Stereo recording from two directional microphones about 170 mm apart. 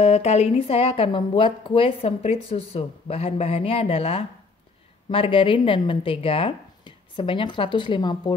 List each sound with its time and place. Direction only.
0.0 s speech: 40° left (ahead or behind)